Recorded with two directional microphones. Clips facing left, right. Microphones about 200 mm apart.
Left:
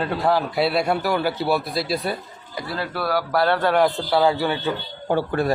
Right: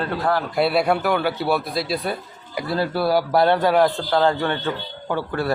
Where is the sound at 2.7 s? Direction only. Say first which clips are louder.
Right 5 dB; 30° right (ahead or behind).